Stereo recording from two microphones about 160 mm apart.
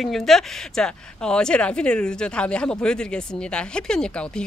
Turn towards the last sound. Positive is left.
turn(degrees=5)  # may be behind; listen again after turning